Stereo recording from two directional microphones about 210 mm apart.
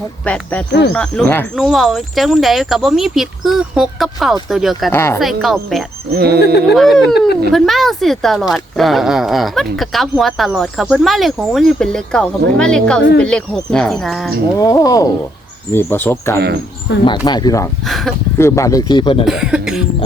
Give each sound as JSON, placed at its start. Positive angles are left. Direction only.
{"t": 0.3, "sound": "speech", "side_deg": 5}
{"t": 0.7, "sound": "speech", "side_deg": 55}
{"t": 0.9, "sound": "speech", "side_deg": 5}
{"t": 4.9, "sound": "speech", "side_deg": 10}
{"t": 5.2, "sound": "speech", "side_deg": 0}
{"t": 6.1, "sound": "speech", "side_deg": -50}
{"t": 6.7, "sound": "speech", "side_deg": 0}
{"t": 14.6, "sound": "speech", "side_deg": 15}
{"t": 17.8, "sound": "speech", "side_deg": 0}
{"t": 18.3, "sound": "speech", "side_deg": 15}
{"t": 19.2, "sound": "speech", "side_deg": -5}